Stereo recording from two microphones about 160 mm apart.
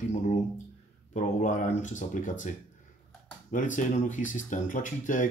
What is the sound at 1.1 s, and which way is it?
Speech, 50° left (ahead or behind).